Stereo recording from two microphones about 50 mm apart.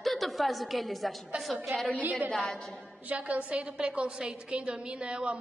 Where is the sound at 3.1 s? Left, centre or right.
Right.